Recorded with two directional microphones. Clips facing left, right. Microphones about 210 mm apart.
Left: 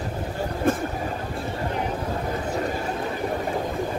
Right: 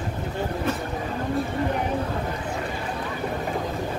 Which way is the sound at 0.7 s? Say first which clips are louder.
Left 7 dB; 50° left (ahead or behind).